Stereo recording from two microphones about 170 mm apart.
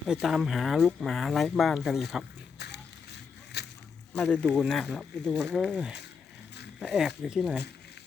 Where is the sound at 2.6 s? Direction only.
80° left.